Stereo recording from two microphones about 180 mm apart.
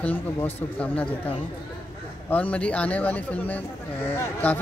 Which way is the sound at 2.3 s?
5° left (ahead or behind).